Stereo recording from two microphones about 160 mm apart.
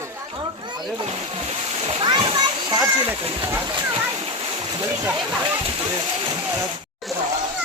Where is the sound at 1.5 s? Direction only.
40° right (ahead or behind).